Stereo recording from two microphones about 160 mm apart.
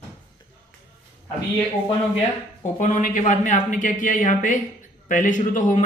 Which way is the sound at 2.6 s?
50° left (ahead or behind).